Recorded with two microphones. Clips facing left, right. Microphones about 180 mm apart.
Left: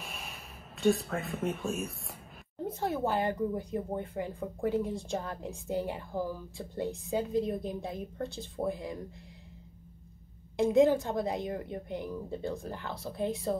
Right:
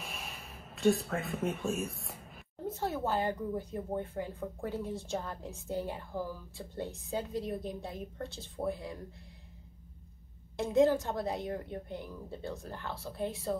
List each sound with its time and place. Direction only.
0.0 s speech: centre (ahead or behind)
2.8 s a woman's voice: 15° left (ahead or behind)
10.5 s a woman's voice: 15° left (ahead or behind)